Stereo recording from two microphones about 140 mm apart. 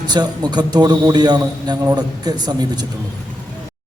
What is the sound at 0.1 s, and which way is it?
A man's voice, 30° right (ahead or behind).